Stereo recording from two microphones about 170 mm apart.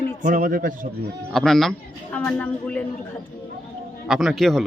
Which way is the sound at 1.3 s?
Centre (ahead or behind).